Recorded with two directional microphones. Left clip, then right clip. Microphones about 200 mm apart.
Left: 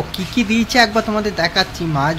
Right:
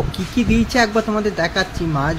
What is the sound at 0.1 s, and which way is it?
Speech, centre (ahead or behind).